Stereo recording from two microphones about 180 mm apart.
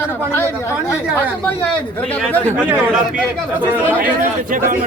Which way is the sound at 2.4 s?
15° right (ahead or behind).